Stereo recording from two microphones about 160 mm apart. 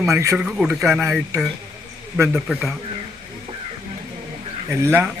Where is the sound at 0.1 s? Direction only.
20° right (ahead or behind).